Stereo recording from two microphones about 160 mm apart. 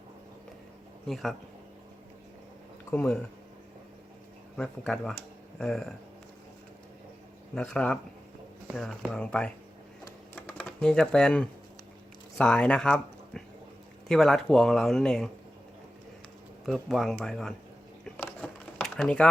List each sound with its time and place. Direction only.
1.0 s speech: centre (ahead or behind)
2.9 s speech: 5° left (ahead or behind)
4.5 s speech: 5° left (ahead or behind)
7.5 s speech: 5° left (ahead or behind)
10.0 s typing: 10° left (ahead or behind)
12.4 s speech: 5° left (ahead or behind)
16.6 s speech: centre (ahead or behind)
18.0 s a sound: 5° left (ahead or behind)